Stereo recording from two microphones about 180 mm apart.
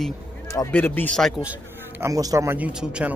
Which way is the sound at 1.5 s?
10° right (ahead or behind).